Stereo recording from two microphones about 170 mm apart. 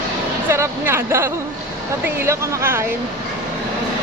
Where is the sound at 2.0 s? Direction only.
15° right (ahead or behind).